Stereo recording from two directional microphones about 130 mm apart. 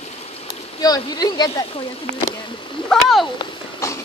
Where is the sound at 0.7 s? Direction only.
30° left (ahead or behind).